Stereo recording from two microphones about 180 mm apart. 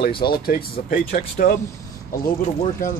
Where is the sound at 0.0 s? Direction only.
60° left (ahead or behind).